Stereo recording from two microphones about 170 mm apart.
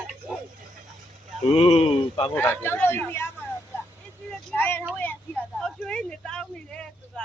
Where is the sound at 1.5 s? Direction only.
35° left (ahead or behind).